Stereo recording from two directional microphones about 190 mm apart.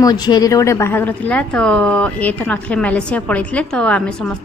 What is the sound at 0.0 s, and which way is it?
Speech, 20° left (ahead or behind).